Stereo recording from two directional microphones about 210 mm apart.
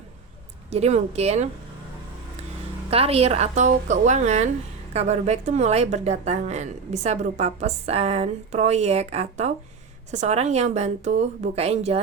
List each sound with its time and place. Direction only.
0.7 s speech: 30° right (ahead or behind)
2.9 s speech: 30° right (ahead or behind)